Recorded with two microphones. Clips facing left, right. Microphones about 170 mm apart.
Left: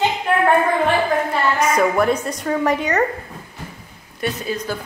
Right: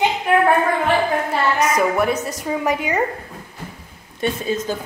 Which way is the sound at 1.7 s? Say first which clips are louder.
Left 1 dB; 5° right (ahead or behind).